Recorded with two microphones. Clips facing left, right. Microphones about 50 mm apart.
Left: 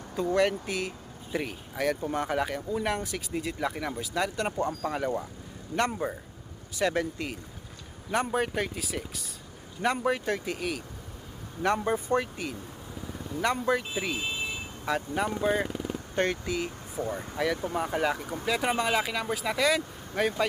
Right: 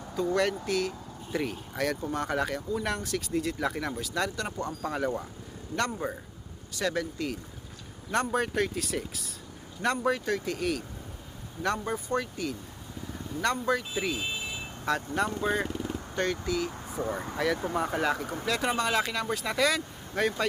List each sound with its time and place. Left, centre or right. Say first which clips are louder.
0.6 s speech: right 3 dB; left
1.5 s speech: left 1 dB; centre
4.8 s speech: left 1 dB; centre
5.7 s speech: left 2 dB; left
8.1 s speech: even; centre
9.8 s speech: even; centre
10.6 s speech: right 3 dB; centre
11.6 s speech: left 4 dB; left; by 16.0 s centre
16.1 s speech: left 1 dB; left
17.0 s speech: even; right
17.3 s speech: even; centre